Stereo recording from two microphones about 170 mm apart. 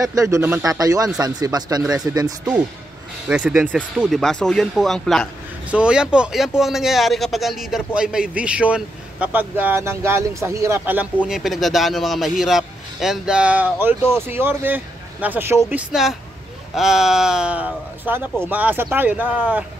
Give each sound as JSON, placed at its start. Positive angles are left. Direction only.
{"t": 0.0, "sound": "speech", "side_deg": -20}
{"t": 1.8, "sound": "a man's voice", "side_deg": -5}
{"t": 2.1, "sound": "speech", "side_deg": -20}
{"t": 3.3, "sound": "a man's voice", "side_deg": -5}
{"t": 11.2, "sound": "a man's voice", "side_deg": 0}